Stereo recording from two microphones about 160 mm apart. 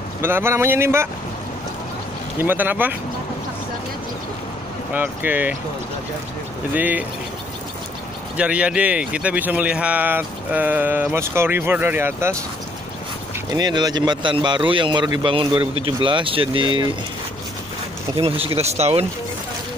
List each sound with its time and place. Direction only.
0.2 s speech: 15° right (ahead or behind)
2.3 s speech: 10° right (ahead or behind)
4.9 s speech: 10° right (ahead or behind)
6.7 s speech: 10° right (ahead or behind)
8.4 s speech: 5° right (ahead or behind)
13.5 s speech: 25° right (ahead or behind)
18.1 s speech: 35° right (ahead or behind)